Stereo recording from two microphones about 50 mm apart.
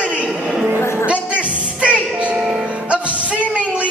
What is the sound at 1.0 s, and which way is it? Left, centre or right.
Music, right.